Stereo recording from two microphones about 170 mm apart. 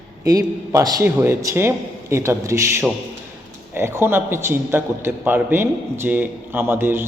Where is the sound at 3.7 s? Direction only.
15° right (ahead or behind).